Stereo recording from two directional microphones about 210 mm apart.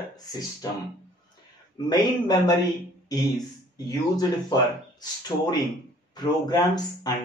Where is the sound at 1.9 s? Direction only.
20° left (ahead or behind).